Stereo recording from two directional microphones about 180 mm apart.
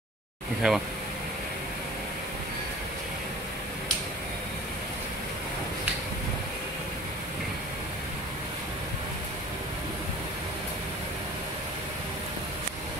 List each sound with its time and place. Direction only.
0.6 s speech: 5° right (ahead or behind)